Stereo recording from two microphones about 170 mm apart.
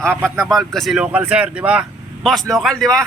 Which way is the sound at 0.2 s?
Centre (ahead or behind).